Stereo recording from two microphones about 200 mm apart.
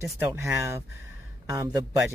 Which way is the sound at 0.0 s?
15° right (ahead or behind).